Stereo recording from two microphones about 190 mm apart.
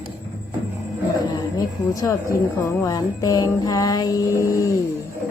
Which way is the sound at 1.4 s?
20° left (ahead or behind).